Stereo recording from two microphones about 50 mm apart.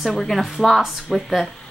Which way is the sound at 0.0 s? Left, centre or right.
Centre.